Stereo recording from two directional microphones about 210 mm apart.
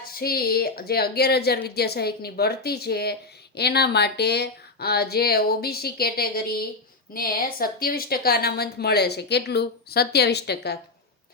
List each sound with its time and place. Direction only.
0.1 s speech: 45° left (ahead or behind)